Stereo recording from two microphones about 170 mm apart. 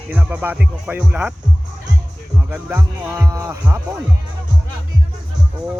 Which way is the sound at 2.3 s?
10° right (ahead or behind).